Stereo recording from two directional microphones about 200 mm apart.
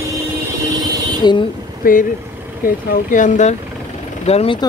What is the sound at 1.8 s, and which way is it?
Speech, 45° left (ahead or behind).